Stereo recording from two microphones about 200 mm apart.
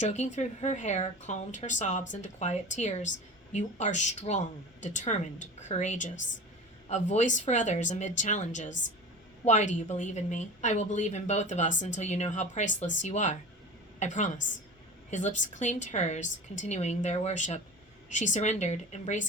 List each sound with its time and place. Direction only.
0.0 s a woman's voice: 35° left (ahead or behind)